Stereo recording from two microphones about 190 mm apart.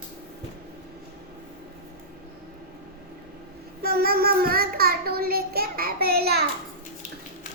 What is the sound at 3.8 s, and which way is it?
Child singing, 50° right (ahead or behind).